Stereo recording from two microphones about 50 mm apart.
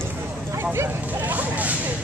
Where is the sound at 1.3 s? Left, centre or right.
Right.